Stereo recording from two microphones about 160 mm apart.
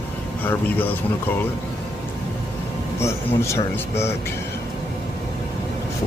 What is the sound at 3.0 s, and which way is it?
Speech, 15° left (ahead or behind).